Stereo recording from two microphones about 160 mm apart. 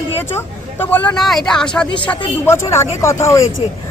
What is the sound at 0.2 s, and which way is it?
Speech, 15° left (ahead or behind).